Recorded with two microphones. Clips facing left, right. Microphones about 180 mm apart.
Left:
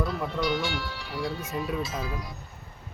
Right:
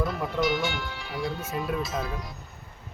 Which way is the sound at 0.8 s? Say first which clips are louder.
Even; 50° right (ahead or behind).